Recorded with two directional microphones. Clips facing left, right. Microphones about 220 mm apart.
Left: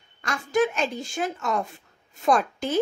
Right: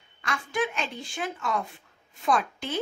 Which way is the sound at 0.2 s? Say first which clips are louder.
Left 6 dB; 45° left (ahead or behind).